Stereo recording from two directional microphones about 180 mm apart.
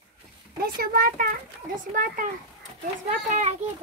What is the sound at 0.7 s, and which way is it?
Speech, 55° right (ahead or behind).